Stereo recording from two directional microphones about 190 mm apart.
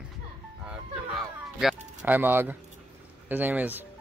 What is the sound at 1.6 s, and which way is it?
Speech, 5° right (ahead or behind).